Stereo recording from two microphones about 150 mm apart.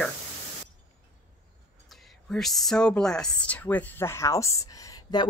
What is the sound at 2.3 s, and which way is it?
Speech, centre (ahead or behind).